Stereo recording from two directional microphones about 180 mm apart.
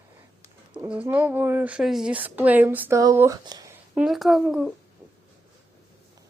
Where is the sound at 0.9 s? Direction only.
10° right (ahead or behind).